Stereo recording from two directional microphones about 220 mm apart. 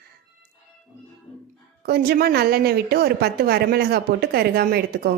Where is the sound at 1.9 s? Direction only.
45° right (ahead or behind).